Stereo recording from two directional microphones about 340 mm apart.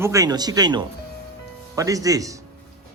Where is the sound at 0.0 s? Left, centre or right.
Centre.